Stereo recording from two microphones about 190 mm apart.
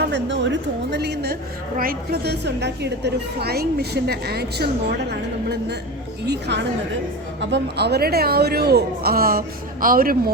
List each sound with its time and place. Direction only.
0.1 s a woman's voice: 70° right (ahead or behind)
6.2 s a woman's voice: 65° right (ahead or behind)